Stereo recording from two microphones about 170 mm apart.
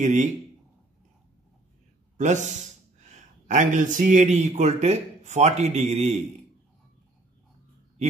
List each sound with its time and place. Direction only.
0.0 s speech: 45° right (ahead or behind)
2.1 s speech: 45° right (ahead or behind)